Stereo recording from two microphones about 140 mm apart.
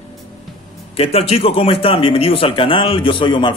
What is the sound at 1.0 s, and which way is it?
A man's voice, 45° left (ahead or behind).